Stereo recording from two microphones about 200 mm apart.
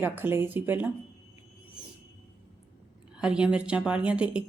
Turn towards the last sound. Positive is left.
turn(degrees=-5)  # may be behind; listen again after turning